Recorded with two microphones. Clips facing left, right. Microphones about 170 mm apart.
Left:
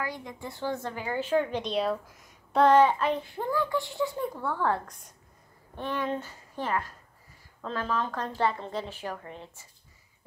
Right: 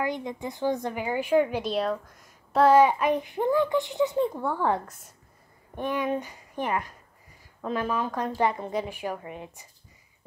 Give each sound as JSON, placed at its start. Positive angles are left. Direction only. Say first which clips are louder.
{"t": 0.0, "sound": "a woman's voice", "louder": "right 6 dB", "side_deg": -20}